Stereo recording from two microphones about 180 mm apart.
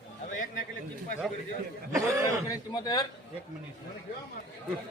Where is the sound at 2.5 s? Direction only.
20° left (ahead or behind).